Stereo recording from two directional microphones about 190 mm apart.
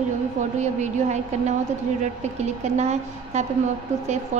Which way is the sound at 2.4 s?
35° right (ahead or behind).